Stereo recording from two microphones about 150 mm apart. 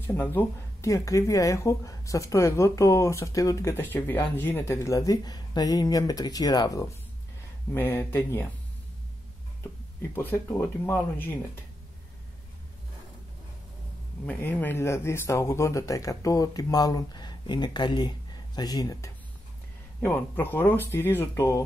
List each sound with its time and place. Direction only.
0.0 s speech: 15° left (ahead or behind)
10.1 s speech: 15° left (ahead or behind)
14.2 s speech: 10° left (ahead or behind)
20.0 s speech: 15° left (ahead or behind)